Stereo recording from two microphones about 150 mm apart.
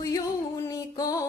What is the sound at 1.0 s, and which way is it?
Music, 25° left (ahead or behind).